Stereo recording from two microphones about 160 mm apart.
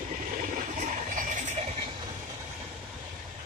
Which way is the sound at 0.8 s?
50° right (ahead or behind).